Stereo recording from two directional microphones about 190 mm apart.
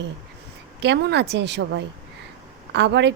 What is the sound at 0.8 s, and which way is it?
A woman's voice, 65° right (ahead or behind).